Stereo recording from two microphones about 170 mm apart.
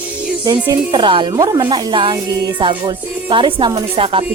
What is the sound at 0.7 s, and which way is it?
Speech, 30° right (ahead or behind).